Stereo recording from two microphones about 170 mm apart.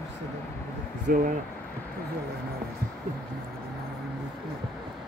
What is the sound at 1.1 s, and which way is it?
Speech, 60° right (ahead or behind).